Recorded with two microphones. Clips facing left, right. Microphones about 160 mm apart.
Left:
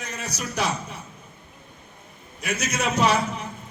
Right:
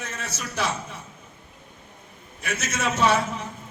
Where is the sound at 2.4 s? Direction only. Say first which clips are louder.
Left 1 dB; 15° left (ahead or behind).